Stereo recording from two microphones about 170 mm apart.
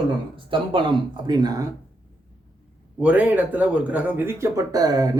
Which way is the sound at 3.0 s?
10° right (ahead or behind).